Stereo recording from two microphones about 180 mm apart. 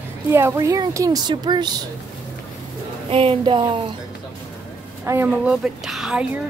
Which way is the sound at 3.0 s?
30° right (ahead or behind).